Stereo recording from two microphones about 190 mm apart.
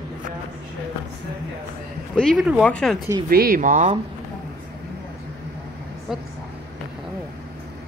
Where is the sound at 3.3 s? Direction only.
50° right (ahead or behind).